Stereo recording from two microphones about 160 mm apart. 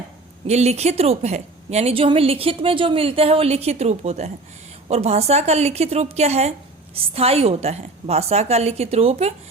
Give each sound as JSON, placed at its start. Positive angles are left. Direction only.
{"t": 0.4, "sound": "a woman's voice", "side_deg": -40}